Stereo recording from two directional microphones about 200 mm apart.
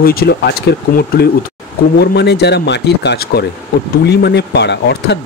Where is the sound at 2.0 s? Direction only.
55° left (ahead or behind).